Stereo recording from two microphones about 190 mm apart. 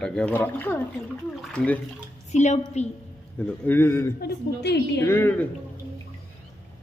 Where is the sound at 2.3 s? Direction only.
40° left (ahead or behind).